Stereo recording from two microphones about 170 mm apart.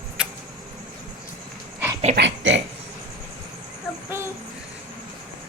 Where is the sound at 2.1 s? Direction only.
90° right.